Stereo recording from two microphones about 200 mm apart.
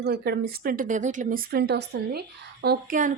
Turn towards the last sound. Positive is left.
turn(degrees=-40)  # may be behind; listen again after turning